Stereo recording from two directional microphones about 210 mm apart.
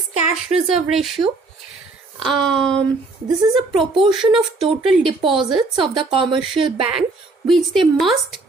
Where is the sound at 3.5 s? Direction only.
25° right (ahead or behind).